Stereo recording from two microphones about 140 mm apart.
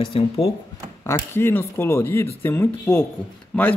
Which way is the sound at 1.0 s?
20° left (ahead or behind).